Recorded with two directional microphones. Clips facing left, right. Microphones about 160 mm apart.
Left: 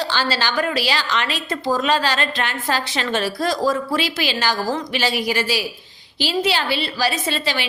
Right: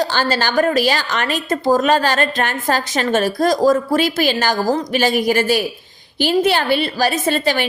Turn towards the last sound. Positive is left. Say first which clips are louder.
# right 6 dB
turn(degrees=-50)  # may be behind; listen again after turning